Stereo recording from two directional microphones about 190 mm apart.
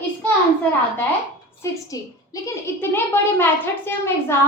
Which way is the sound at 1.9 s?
20° left (ahead or behind).